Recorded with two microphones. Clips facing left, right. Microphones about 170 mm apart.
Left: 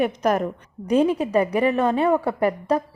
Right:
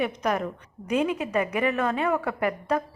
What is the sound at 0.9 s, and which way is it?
A woman's voice, 35° left (ahead or behind).